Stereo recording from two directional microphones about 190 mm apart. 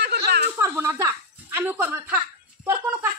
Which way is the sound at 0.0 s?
60° right (ahead or behind).